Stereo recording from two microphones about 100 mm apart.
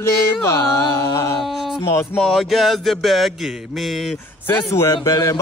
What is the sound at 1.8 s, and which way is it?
Music, 25° left (ahead or behind).